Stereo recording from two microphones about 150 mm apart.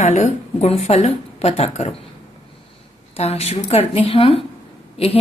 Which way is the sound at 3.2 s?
45° left (ahead or behind).